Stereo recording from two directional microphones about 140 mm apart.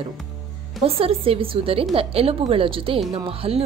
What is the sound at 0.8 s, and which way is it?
Speech, 40° right (ahead or behind).